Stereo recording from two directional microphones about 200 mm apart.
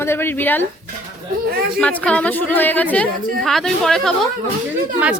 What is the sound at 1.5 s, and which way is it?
Speech, 50° right (ahead or behind).